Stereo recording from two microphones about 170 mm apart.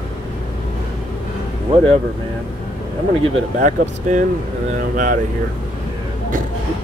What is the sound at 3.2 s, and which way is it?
Speech, 45° right (ahead or behind).